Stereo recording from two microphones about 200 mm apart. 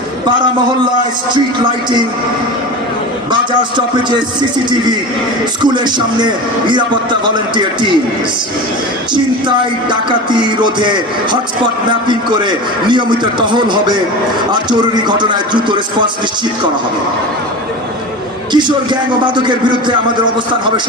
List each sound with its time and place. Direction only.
3.6 s speech: 20° right (ahead or behind)
5.6 s speech: 20° right (ahead or behind)
10.1 s speech: 25° right (ahead or behind)
18.5 s speech: 25° right (ahead or behind)